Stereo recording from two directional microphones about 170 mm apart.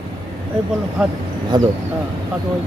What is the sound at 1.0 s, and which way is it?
Speech, 5° right (ahead or behind).